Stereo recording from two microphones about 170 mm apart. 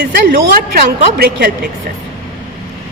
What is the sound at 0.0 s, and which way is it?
A woman's voice, 60° right (ahead or behind).